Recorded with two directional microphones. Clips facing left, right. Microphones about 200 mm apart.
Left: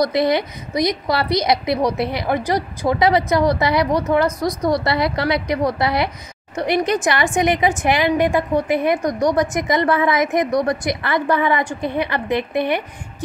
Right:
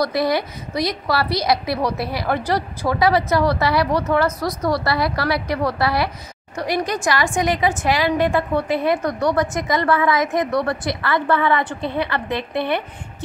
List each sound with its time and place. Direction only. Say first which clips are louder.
0.0 s a woman's voice: left 2 dB; 20° left (ahead or behind)